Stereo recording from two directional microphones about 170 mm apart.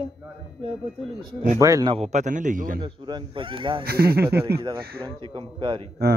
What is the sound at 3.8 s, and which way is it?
Speech, 65° right (ahead or behind).